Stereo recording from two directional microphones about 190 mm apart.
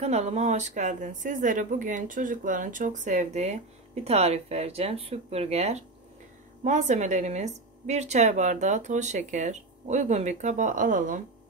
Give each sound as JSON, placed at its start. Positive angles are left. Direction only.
{"t": 0.0, "sound": "speech", "side_deg": -35}